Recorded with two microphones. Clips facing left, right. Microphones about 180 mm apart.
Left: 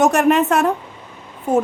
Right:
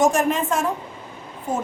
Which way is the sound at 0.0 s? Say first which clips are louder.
Left 5 dB; 65° left (ahead or behind).